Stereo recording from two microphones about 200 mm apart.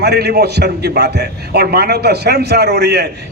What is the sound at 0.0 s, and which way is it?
A man's voice, 55° right (ahead or behind).